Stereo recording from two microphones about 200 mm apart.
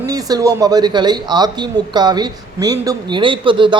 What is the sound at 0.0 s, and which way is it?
A man's voice, 20° right (ahead or behind).